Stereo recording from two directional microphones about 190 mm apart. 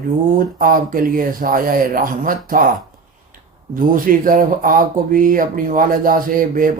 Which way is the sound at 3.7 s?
45° right (ahead or behind).